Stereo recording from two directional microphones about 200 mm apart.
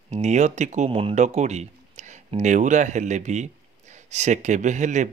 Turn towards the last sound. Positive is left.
turn(degrees=-35)  # may be behind; listen again after turning